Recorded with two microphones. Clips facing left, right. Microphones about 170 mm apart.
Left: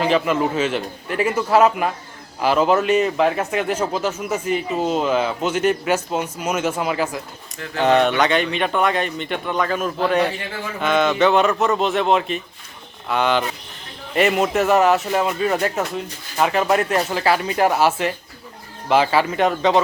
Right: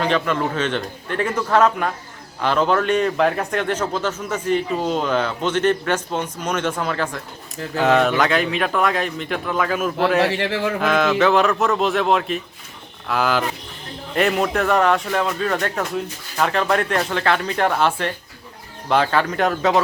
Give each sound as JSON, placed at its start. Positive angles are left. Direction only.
{"t": 0.0, "sound": "a man's voice", "side_deg": 5}
{"t": 10.2, "sound": "speech", "side_deg": -80}
{"t": 10.8, "sound": "a man's voice", "side_deg": 0}